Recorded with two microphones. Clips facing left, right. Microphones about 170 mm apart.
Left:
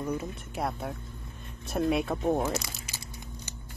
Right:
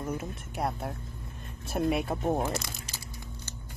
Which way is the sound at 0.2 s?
5° right (ahead or behind).